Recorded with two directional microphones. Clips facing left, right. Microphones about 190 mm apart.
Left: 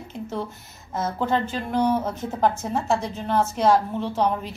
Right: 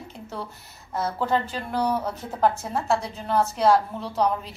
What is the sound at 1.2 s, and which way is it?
A woman's voice, centre (ahead or behind).